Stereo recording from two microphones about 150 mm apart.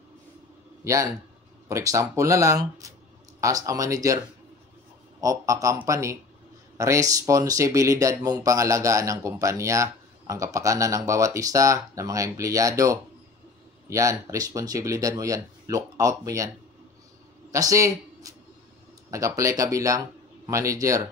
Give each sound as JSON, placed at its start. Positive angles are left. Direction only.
{"t": 1.7, "sound": "speech", "side_deg": -20}
{"t": 5.2, "sound": "speech", "side_deg": -20}
{"t": 17.5, "sound": "speech", "side_deg": -20}